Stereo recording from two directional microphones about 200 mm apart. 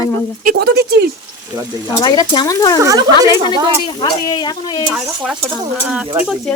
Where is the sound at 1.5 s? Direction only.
20° right (ahead or behind).